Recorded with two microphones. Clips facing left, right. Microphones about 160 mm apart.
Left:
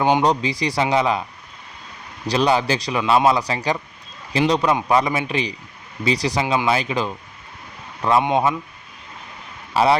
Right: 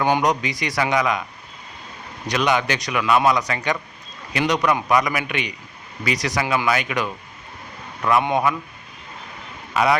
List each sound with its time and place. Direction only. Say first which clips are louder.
0.0 s a man's voice: left 2 dB; 25° left (ahead or behind)
2.2 s a man's voice: left 2 dB; 30° left (ahead or behind)
9.7 s speech: left 2 dB; 30° left (ahead or behind)